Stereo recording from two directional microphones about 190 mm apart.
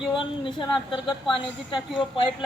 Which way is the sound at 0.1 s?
25° left (ahead or behind).